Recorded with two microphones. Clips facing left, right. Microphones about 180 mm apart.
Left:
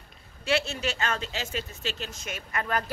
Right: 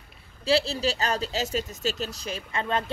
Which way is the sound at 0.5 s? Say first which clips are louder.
Right 4 dB; 30° right (ahead or behind).